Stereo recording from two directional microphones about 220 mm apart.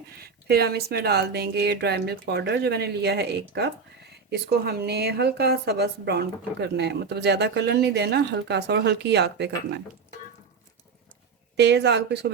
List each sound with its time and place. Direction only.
0.1 s a woman's voice: 45° right (ahead or behind)
11.5 s a woman's voice: 50° right (ahead or behind)